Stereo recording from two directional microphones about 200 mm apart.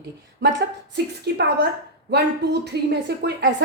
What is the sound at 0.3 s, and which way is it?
A woman's voice, 60° right (ahead or behind).